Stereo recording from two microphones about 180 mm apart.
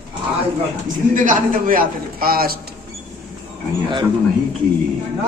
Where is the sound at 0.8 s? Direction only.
45° right (ahead or behind).